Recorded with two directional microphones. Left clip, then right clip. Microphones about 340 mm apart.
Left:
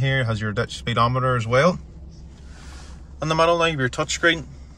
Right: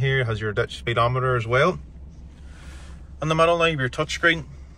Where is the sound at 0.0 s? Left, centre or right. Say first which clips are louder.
Even; centre.